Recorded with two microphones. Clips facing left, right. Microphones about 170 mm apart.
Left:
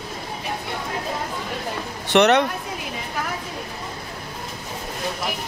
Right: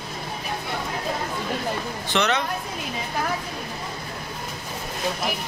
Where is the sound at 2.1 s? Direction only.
65° left (ahead or behind).